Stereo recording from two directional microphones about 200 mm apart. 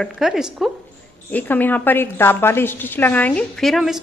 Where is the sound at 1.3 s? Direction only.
10° left (ahead or behind).